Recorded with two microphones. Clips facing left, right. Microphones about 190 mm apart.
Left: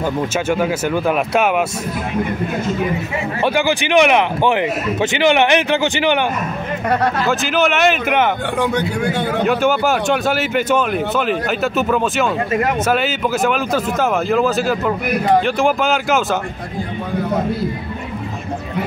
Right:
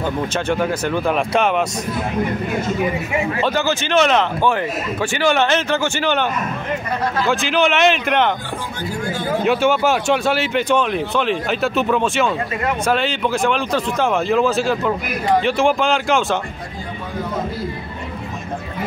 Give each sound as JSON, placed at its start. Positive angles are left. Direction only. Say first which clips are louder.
{"t": 0.5, "sound": "speech", "louder": "left 1 dB", "side_deg": 5}
{"t": 3.4, "sound": "speech", "louder": "left 3 dB", "side_deg": 15}
{"t": 7.2, "sound": "speech", "louder": "left 1 dB", "side_deg": 0}
{"t": 8.5, "sound": "a man's voice", "louder": "left 8 dB", "side_deg": 65}
{"t": 9.5, "sound": "speech", "louder": "right 1 dB", "side_deg": 0}